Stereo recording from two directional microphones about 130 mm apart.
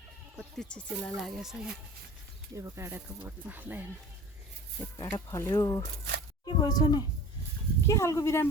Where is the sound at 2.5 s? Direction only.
20° right (ahead or behind).